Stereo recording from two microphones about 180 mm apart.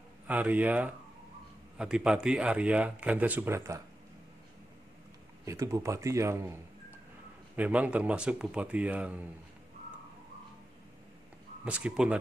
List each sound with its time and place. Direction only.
0.3 s speech: 10° right (ahead or behind)
5.4 s speech: 15° right (ahead or behind)
11.6 s speech: 5° right (ahead or behind)